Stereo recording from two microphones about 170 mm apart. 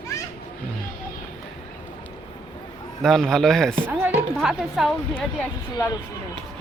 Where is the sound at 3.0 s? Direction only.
5° left (ahead or behind).